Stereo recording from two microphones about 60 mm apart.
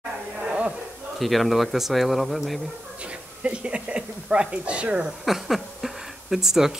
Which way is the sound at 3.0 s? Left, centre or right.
Centre.